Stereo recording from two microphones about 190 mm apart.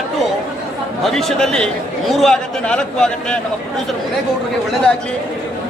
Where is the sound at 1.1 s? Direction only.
Centre (ahead or behind).